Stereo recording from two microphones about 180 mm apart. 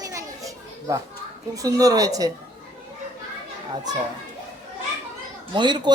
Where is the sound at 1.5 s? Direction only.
20° right (ahead or behind).